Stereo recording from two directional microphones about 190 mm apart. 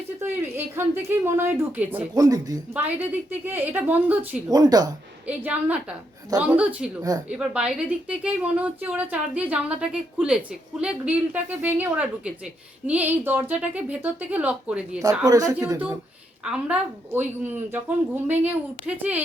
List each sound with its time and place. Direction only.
0.2 s speech: 10° right (ahead or behind)
4.4 s speech: 20° right (ahead or behind)
5.4 s speech: 5° right (ahead or behind)
15.0 s speech: 20° right (ahead or behind)
16.4 s speech: 5° right (ahead or behind)